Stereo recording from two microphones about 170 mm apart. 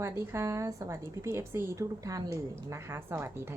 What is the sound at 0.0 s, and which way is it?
A woman's voice, 15° right (ahead or behind).